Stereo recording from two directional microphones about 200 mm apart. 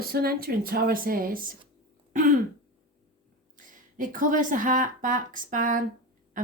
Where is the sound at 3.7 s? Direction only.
40° right (ahead or behind).